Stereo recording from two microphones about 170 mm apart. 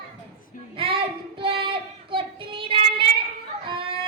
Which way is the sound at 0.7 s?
30° right (ahead or behind).